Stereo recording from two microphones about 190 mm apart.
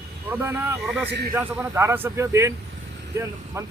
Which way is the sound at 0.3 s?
10° right (ahead or behind).